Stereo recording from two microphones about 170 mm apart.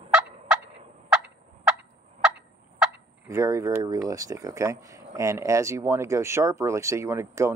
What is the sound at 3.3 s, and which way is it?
Speech, 15° right (ahead or behind).